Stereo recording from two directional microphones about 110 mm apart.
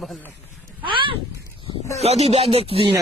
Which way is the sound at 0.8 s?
50° right (ahead or behind).